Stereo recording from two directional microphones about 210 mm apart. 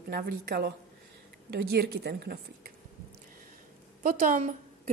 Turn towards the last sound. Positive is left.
turn(degrees=-35)  # may be behind; listen again after turning